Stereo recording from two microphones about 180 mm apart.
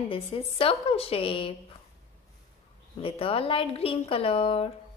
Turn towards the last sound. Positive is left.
turn(degrees=30)  # may be behind; listen again after turning